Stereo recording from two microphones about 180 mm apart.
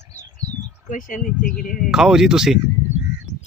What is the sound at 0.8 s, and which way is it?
Speech, 45° left (ahead or behind).